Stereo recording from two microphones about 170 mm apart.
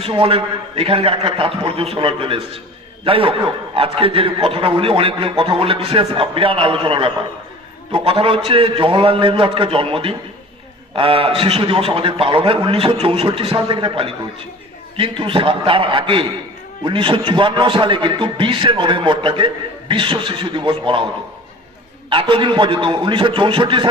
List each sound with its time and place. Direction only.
0.0 s a man's voice: 35° right (ahead or behind)
22.1 s a man's voice: 30° right (ahead or behind)